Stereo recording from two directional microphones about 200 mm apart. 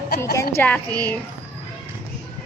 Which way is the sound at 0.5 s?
10° left (ahead or behind).